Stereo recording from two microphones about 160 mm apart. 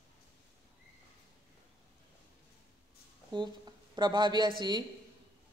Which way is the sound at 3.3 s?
30° right (ahead or behind).